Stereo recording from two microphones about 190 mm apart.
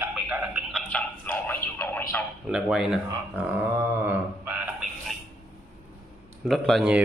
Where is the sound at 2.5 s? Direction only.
5° right (ahead or behind).